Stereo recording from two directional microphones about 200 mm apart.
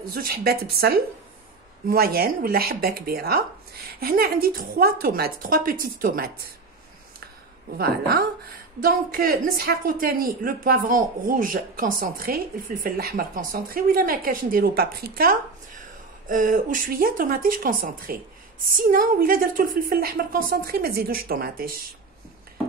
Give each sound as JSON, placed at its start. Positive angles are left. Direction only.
{"t": 0.1, "sound": "a woman's voice", "side_deg": -50}
{"t": 7.7, "sound": "a woman's voice", "side_deg": -50}